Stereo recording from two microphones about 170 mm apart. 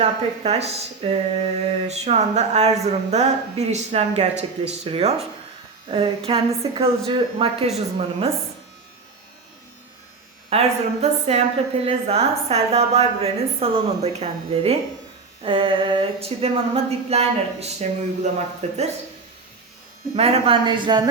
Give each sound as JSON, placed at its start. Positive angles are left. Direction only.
{"t": 0.0, "sound": "a woman's voice", "side_deg": -35}
{"t": 10.5, "sound": "a woman's voice", "side_deg": -40}
{"t": 20.1, "sound": "speech", "side_deg": -35}